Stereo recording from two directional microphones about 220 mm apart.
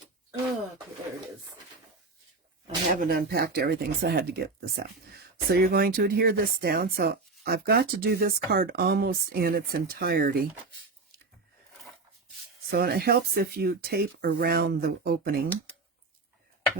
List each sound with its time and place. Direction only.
3.0 s speech: 45° right (ahead or behind)
12.7 s speech: 45° right (ahead or behind)